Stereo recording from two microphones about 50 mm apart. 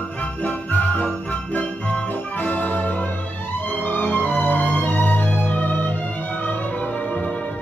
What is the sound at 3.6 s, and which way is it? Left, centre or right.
Music, left.